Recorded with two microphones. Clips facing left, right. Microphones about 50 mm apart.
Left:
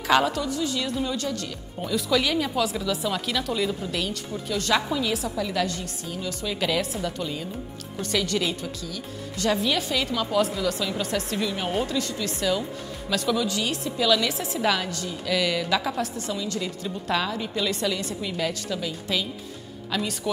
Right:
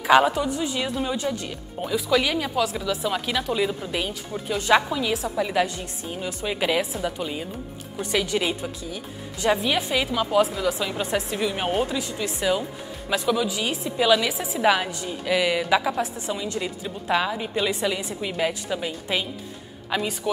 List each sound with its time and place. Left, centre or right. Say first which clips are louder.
0.0 s a woman's voice: right 4 dB; centre
3.1 s speech: right 2 dB; centre
4.8 s a woman's voice: right 1 dB; centre
5.3 s a woman's voice: right 3 dB; right
14.3 s speech: even; centre
14.6 s a woman's voice: right 4 dB; centre